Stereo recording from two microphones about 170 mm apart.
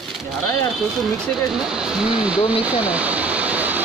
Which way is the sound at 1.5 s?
5° right (ahead or behind).